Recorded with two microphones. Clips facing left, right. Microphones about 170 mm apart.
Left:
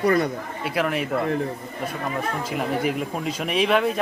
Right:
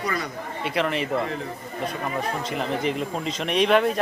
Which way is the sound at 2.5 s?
5° left (ahead or behind).